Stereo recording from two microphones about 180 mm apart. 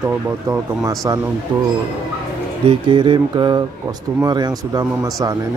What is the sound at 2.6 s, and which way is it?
Speech, 25° right (ahead or behind).